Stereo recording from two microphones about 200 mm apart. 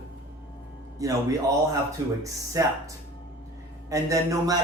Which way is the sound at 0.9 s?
15° right (ahead or behind).